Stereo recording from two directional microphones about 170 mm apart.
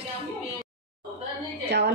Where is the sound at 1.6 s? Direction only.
90° right.